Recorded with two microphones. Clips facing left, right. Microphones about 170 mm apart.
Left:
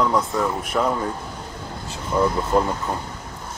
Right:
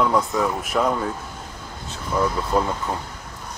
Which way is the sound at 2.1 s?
10° left (ahead or behind).